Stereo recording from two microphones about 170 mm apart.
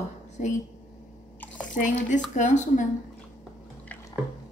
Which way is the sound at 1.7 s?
50° left (ahead or behind).